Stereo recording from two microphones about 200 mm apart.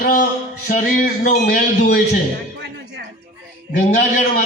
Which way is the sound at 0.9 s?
45° left (ahead or behind).